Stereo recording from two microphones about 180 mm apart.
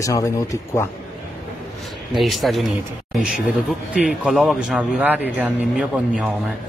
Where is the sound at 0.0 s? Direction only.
20° left (ahead or behind).